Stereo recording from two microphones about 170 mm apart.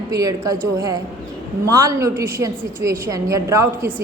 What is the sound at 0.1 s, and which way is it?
A woman's voice, 20° right (ahead or behind).